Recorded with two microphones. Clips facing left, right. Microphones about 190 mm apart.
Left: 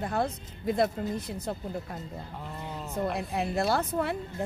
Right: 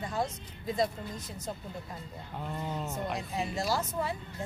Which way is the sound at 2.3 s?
Centre (ahead or behind).